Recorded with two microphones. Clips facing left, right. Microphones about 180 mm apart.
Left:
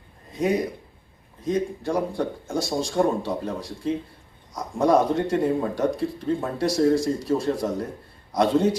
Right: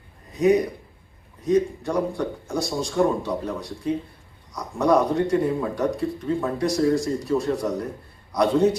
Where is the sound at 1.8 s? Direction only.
25° left (ahead or behind).